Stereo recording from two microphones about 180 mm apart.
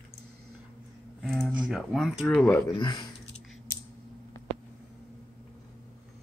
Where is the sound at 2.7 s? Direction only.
25° left (ahead or behind).